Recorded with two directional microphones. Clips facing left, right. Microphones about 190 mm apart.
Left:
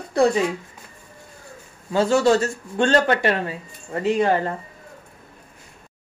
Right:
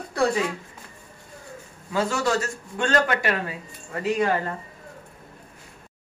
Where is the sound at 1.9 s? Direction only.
30° left (ahead or behind).